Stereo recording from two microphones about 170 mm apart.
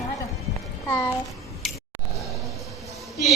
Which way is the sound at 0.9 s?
15° left (ahead or behind).